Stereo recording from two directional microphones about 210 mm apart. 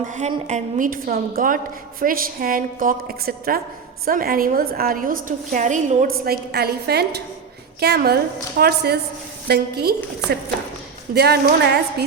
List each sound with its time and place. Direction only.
0.2 s a woman's voice: 35° right (ahead or behind)
6.2 s a woman's voice: 45° right (ahead or behind)
11.1 s a woman's voice: 50° right (ahead or behind)